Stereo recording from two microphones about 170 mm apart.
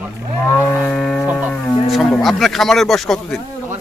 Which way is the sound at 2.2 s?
Centre (ahead or behind).